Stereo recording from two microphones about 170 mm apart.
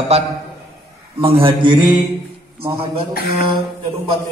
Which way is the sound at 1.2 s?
30° right (ahead or behind).